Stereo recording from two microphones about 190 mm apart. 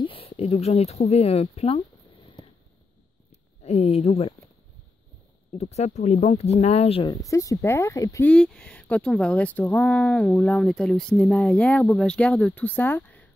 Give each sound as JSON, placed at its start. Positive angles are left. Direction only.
{"t": 0.0, "sound": "speech", "side_deg": 30}
{"t": 3.3, "sound": "a sound", "side_deg": 35}
{"t": 5.5, "sound": "speech", "side_deg": 35}
{"t": 8.3, "sound": "speech", "side_deg": 5}